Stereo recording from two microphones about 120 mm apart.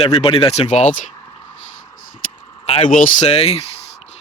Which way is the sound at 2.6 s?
65° left (ahead or behind).